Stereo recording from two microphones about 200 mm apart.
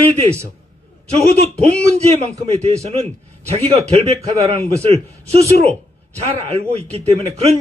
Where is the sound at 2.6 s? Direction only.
35° right (ahead or behind).